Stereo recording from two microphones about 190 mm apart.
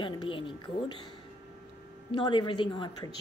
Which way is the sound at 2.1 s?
25° left (ahead or behind).